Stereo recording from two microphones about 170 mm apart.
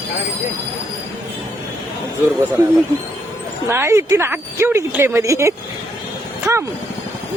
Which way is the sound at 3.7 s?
15° right (ahead or behind).